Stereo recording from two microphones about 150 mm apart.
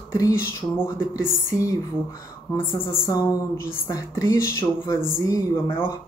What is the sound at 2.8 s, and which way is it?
A woman's voice, 15° left (ahead or behind).